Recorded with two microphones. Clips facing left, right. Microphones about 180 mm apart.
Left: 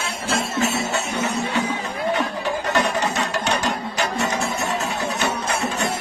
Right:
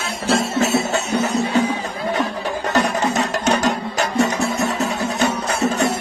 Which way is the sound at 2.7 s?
40° right (ahead or behind).